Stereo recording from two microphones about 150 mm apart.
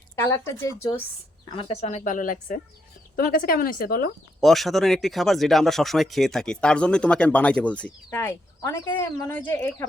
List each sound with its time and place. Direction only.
0.2 s speech: 20° left (ahead or behind)
1.5 s speech: 35° left (ahead or behind); by 4.1 s 75° left (ahead or behind)
4.4 s speech: centre (ahead or behind)